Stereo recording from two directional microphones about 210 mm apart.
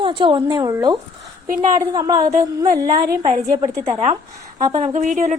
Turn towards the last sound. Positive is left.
turn(degrees=-35)  # may be behind; listen again after turning